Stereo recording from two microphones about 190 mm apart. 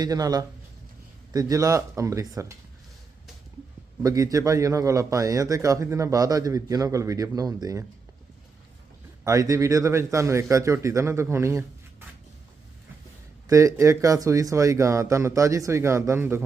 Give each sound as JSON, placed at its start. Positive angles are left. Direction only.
{"t": 0.0, "sound": "a man's voice", "side_deg": -20}
{"t": 4.0, "sound": "a man's voice", "side_deg": -20}
{"t": 9.2, "sound": "a man's voice", "side_deg": -15}
{"t": 13.5, "sound": "a man's voice", "side_deg": -15}